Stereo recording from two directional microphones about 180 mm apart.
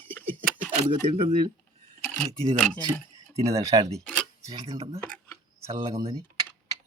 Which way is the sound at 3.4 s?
20° right (ahead or behind).